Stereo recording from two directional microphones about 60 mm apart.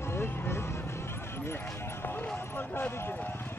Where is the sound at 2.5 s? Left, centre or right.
Left.